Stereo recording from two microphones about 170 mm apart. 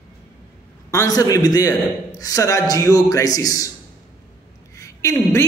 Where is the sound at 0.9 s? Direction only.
20° left (ahead or behind).